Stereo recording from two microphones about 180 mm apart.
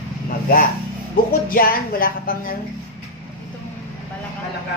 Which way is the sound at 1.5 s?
50° left (ahead or behind).